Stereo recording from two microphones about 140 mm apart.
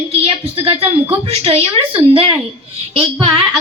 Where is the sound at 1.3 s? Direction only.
45° right (ahead or behind).